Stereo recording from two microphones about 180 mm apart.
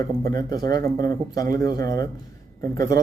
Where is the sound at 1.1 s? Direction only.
20° left (ahead or behind).